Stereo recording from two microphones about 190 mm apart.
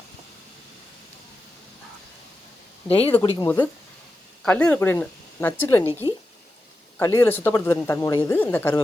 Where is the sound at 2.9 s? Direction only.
30° left (ahead or behind).